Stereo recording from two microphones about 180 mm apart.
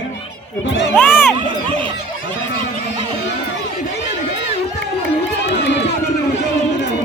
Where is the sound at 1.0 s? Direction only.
10° left (ahead or behind).